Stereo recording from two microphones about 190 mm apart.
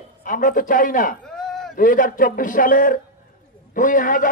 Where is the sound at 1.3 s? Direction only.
Centre (ahead or behind).